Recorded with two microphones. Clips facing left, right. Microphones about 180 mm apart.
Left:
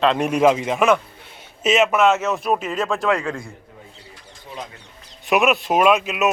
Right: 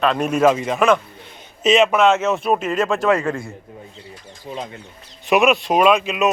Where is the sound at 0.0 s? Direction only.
25° left (ahead or behind); by 3.5 s 5° right (ahead or behind).